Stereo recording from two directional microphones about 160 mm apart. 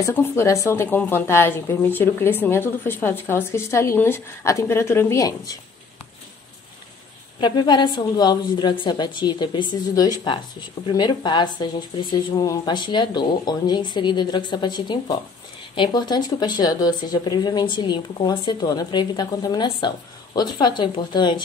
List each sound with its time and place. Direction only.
0.0 s speech: 15° left (ahead or behind)
7.3 s speech: 25° left (ahead or behind)